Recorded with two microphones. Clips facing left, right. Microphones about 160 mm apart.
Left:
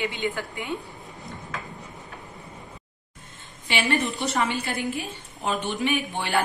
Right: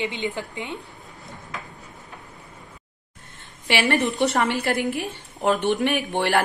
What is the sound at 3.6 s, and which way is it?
A woman's voice, 65° right (ahead or behind).